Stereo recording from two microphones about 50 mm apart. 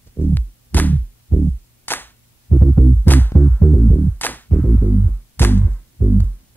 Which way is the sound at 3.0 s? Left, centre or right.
Left.